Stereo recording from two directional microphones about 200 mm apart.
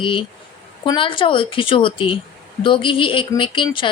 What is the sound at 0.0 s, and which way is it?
Speech, 25° left (ahead or behind).